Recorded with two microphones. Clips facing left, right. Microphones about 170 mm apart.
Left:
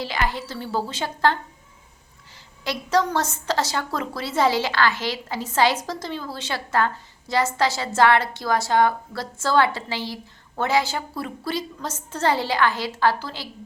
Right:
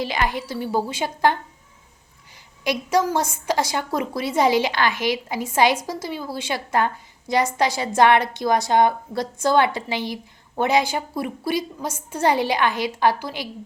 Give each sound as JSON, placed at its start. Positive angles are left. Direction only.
{"t": 0.0, "sound": "a woman's voice", "side_deg": -15}
{"t": 2.6, "sound": "a woman's voice", "side_deg": -10}